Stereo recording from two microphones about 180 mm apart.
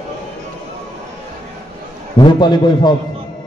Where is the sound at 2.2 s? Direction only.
25° left (ahead or behind).